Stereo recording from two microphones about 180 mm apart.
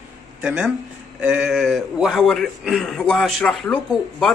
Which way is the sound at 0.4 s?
5° right (ahead or behind).